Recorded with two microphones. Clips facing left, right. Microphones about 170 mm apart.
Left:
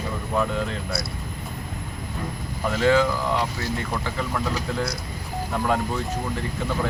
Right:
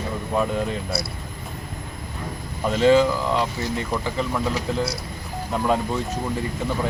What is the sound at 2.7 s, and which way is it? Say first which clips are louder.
Speech: right 3 dB; 20° right (ahead or behind).